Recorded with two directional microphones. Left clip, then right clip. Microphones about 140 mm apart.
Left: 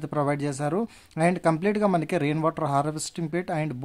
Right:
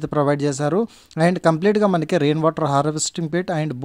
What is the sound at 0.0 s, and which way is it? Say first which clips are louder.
Speech: right 7 dB; 30° right (ahead or behind).